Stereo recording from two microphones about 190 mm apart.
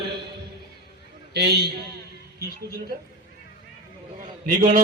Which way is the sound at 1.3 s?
60° right (ahead or behind).